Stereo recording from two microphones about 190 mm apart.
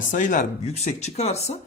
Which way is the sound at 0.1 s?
45° left (ahead or behind).